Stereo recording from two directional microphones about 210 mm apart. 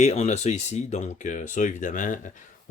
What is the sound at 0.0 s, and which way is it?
Speech, 30° left (ahead or behind).